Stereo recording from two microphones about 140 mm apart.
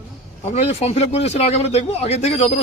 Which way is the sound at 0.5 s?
50° left (ahead or behind).